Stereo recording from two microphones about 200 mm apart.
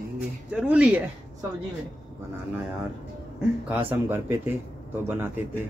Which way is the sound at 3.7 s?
10° right (ahead or behind).